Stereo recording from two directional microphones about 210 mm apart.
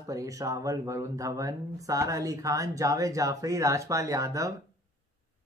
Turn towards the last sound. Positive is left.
turn(degrees=-15)  # may be behind; listen again after turning